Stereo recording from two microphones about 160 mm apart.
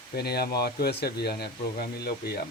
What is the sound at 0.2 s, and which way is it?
Speech, 85° left.